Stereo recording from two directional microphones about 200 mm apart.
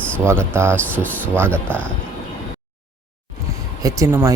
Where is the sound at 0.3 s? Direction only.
10° right (ahead or behind).